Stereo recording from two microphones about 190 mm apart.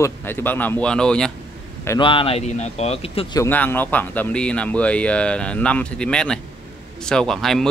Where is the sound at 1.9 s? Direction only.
25° left (ahead or behind).